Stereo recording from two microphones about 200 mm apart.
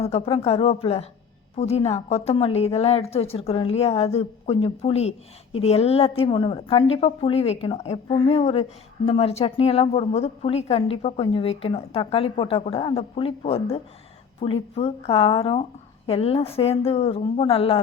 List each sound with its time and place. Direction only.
0.0 s a woman's voice: 30° left (ahead or behind)